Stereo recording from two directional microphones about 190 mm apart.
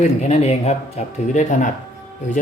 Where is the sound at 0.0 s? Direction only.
35° left (ahead or behind).